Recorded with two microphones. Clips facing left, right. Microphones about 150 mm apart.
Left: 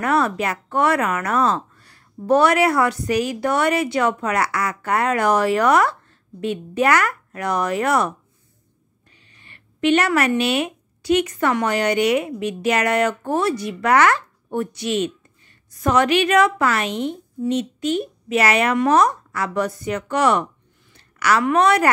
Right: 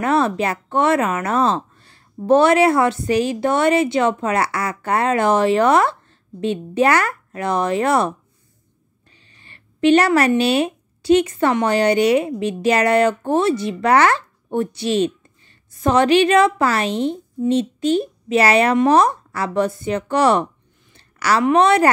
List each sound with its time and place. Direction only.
0.0 s speech: 25° right (ahead or behind)
9.1 s a woman's voice: 30° right (ahead or behind)